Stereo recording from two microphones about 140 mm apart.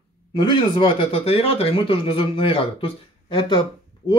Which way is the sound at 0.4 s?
35° left (ahead or behind).